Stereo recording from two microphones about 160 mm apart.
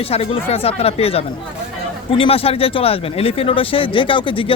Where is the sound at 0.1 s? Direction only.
35° left (ahead or behind).